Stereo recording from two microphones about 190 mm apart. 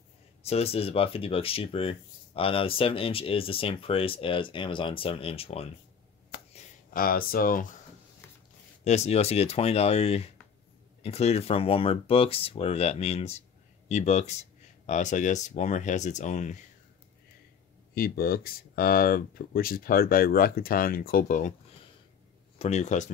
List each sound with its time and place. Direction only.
0.4 s speech: 30° left (ahead or behind)
7.0 s speech: 50° left (ahead or behind)
8.8 s speech: 35° left (ahead or behind)
17.9 s speech: 50° left (ahead or behind)
22.6 s speech: 35° left (ahead or behind)